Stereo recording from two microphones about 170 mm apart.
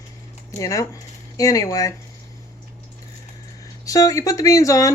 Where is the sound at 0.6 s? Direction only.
20° left (ahead or behind).